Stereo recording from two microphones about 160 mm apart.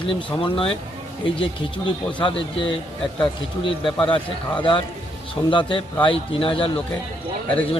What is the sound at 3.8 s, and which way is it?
Speech, 5° left (ahead or behind).